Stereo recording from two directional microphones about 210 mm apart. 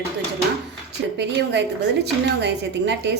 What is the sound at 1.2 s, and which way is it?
A woman's voice, 55° right (ahead or behind).